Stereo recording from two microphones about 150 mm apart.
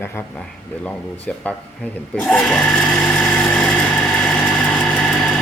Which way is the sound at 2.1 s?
Centre (ahead or behind).